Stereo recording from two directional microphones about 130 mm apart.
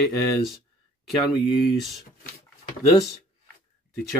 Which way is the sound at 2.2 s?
90° left.